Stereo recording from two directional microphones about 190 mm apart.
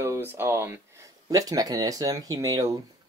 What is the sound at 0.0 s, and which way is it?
Speech, 10° right (ahead or behind).